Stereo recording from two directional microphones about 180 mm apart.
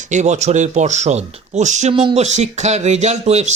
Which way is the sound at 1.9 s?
30° right (ahead or behind).